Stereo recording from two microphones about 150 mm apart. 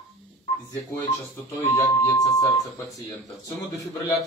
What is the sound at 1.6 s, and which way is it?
Speech, 20° left (ahead or behind).